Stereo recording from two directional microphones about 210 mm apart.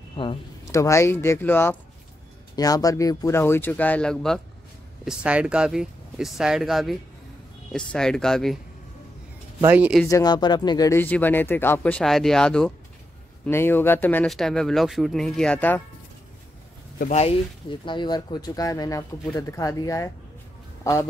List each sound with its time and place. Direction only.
0.1 s speech: 25° left (ahead or behind)
0.7 s speech: 15° left (ahead or behind)
9.6 s speech: 10° right (ahead or behind)
10.0 s speech: 15° left (ahead or behind)
17.1 s speech: 30° left (ahead or behind)